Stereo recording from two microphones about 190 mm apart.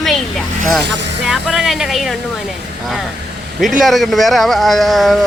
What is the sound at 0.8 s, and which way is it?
Speech, 65° right (ahead or behind).